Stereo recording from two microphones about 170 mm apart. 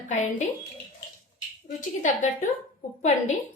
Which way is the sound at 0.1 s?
45° left (ahead or behind).